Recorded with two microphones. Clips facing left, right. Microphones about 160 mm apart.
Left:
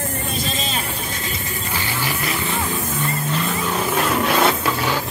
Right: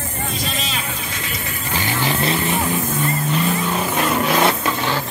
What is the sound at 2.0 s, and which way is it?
Music, 25° right (ahead or behind).